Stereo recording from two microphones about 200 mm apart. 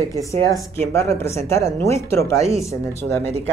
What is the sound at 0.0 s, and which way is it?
Speech, 15° left (ahead or behind).